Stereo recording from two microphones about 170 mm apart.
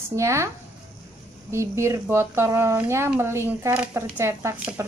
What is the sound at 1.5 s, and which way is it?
A woman's voice, 15° right (ahead or behind).